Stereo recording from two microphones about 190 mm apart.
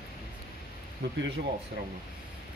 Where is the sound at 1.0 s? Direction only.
60° right (ahead or behind).